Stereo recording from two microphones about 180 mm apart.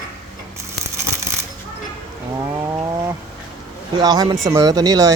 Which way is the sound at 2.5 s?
15° right (ahead or behind).